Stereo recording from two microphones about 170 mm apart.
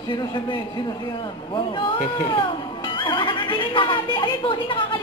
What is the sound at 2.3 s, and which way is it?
Music, 30° left (ahead or behind).